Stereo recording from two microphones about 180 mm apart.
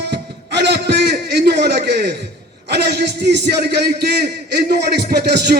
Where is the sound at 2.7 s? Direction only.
65° right (ahead or behind).